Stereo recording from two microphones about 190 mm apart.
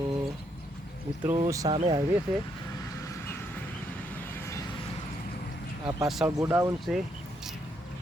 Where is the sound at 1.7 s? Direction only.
35° right (ahead or behind).